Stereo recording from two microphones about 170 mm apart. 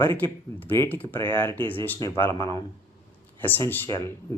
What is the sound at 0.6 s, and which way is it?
Speech, 10° left (ahead or behind).